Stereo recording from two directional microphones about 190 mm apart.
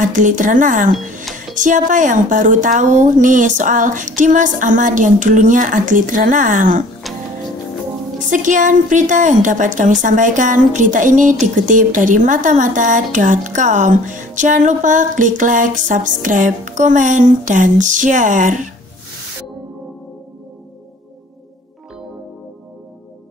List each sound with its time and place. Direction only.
0.0 s a woman's voice: 45° right (ahead or behind)
7.0 s music: centre (ahead or behind)
8.2 s a woman's voice: 40° right (ahead or behind)